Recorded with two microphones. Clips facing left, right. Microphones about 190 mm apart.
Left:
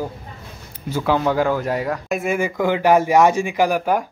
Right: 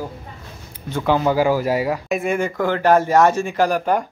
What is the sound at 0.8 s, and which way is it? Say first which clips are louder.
Speech: right 1 dB; centre (ahead or behind).